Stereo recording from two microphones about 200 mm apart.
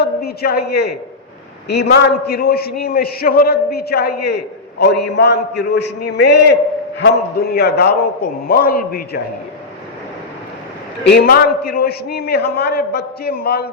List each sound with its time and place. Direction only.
0.0 s a man's voice: 50° left (ahead or behind)
11.0 s a man's voice: 55° left (ahead or behind)